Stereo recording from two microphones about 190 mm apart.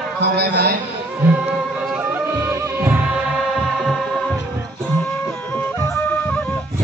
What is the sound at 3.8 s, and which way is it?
Music, centre (ahead or behind).